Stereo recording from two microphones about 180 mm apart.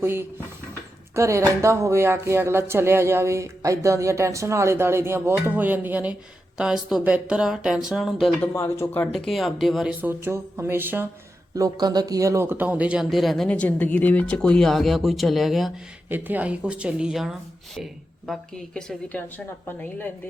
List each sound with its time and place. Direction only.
0.0 s speech: 10° right (ahead or behind)
8.5 s speech: 15° left (ahead or behind)
9.1 s speech: centre (ahead or behind)
10.0 s speech: 15° right (ahead or behind); by 19.2 s 5° left (ahead or behind)